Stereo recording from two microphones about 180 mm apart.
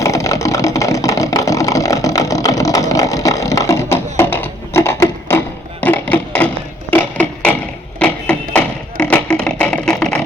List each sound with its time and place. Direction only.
0.0 s vehicle: 15° left (ahead or behind)
5.8 s a sound: 10° left (ahead or behind)
7.9 s music: 5° left (ahead or behind)